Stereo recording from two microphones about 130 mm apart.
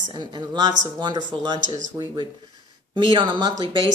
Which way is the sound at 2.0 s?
25° right (ahead or behind).